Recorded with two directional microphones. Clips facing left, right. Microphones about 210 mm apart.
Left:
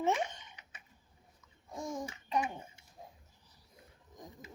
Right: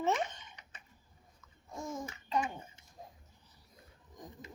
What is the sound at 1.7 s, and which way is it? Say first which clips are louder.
Babbling: left 1 dB; 15° left (ahead or behind).